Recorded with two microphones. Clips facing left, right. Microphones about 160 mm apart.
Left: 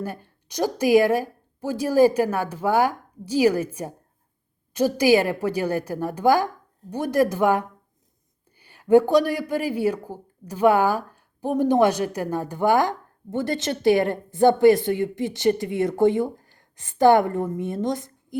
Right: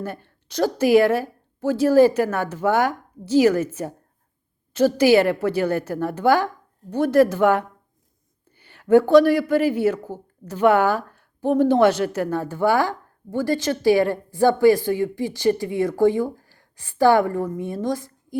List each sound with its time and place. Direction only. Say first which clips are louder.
0.0 s speech: right 1 dB; 10° left (ahead or behind)